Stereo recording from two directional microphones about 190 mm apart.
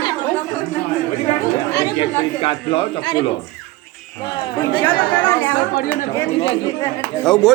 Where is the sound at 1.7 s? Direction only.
25° left (ahead or behind).